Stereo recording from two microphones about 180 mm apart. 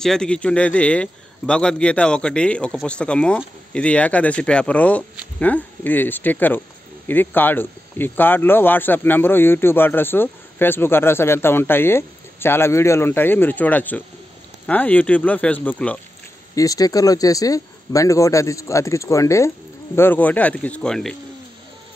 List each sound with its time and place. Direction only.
0.0 s speech: 5° left (ahead or behind)
16.5 s speech: 20° left (ahead or behind); by 21.2 s 5° left (ahead or behind)